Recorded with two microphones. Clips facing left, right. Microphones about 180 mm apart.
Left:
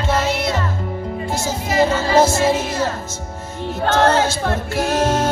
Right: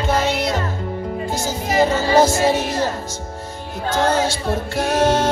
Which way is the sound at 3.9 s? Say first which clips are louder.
Left 2 dB; 70° left (ahead or behind).